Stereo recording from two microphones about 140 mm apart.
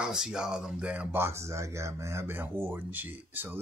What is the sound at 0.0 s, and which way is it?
Speech, 5° right (ahead or behind).